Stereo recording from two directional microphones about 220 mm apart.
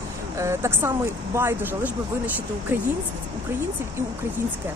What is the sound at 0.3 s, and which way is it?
Speech, 10° right (ahead or behind).